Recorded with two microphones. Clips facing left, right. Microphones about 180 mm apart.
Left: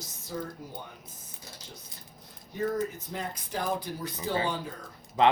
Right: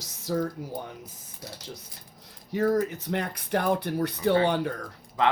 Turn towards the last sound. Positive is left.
turn(degrees=20)  # may be behind; listen again after turning